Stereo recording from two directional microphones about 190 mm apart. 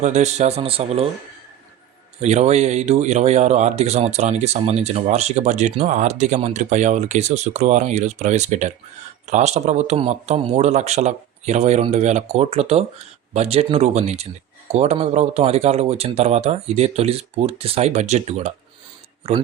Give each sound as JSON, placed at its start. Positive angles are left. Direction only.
{"t": 0.0, "sound": "speech", "side_deg": -35}
{"t": 2.2, "sound": "speech", "side_deg": -35}